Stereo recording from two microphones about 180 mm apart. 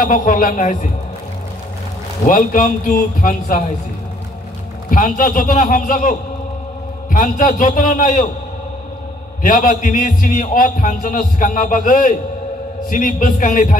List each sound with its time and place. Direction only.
0.1 s a man's voice: 50° left (ahead or behind)
2.2 s a man's voice: 50° left (ahead or behind)
4.9 s a man's voice: 50° left (ahead or behind)
9.4 s a man's voice: 50° left (ahead or behind)